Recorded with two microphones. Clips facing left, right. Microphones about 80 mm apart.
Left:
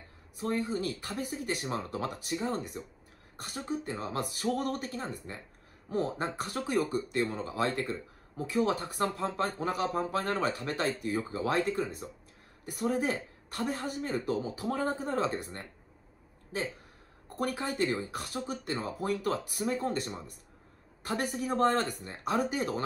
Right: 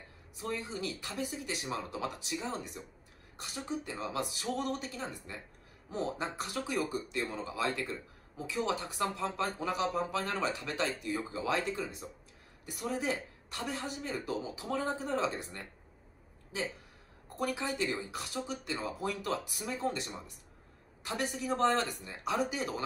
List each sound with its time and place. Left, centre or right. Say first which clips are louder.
0.4 s speech: left 6 dB; left
17.4 s speech: left 3 dB; left